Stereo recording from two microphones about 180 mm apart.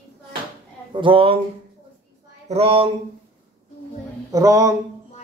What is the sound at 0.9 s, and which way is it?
Speech, 30° right (ahead or behind).